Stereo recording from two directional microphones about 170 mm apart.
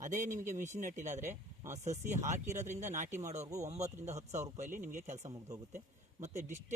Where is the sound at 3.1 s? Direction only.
15° right (ahead or behind).